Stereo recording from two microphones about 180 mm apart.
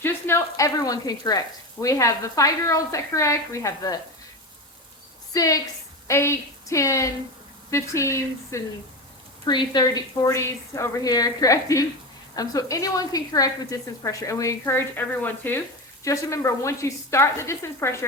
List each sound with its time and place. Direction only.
0.0 s speech: 15° left (ahead or behind)
5.3 s a woman's voice: 20° left (ahead or behind)